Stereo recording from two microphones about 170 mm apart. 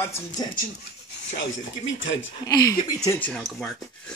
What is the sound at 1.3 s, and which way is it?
Speech, 90° left.